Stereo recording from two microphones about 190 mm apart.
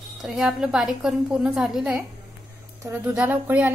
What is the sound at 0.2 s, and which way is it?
A woman's voice, 5° right (ahead or behind).